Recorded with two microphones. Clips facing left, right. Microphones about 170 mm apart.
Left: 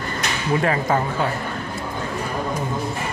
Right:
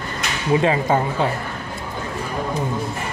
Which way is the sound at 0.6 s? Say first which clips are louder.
Right 2 dB; 20° right (ahead or behind).